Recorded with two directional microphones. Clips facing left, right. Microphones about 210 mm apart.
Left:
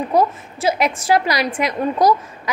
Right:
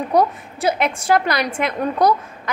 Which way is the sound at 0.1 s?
5° left (ahead or behind).